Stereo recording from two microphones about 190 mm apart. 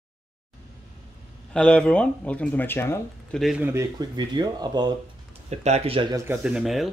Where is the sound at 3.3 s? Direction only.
Centre (ahead or behind).